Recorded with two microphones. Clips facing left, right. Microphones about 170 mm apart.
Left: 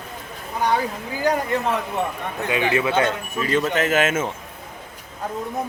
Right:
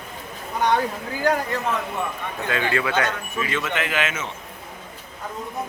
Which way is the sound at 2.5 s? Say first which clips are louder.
Left 3 dB; 15° left (ahead or behind).